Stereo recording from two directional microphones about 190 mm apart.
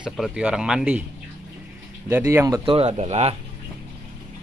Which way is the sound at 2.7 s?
30° right (ahead or behind).